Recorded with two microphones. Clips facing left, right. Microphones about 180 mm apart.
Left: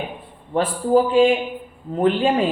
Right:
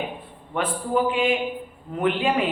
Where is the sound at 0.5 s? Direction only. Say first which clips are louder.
Left 7 dB; 30° left (ahead or behind).